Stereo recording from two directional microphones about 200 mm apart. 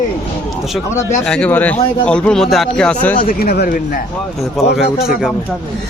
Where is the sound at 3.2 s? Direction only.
50° left (ahead or behind).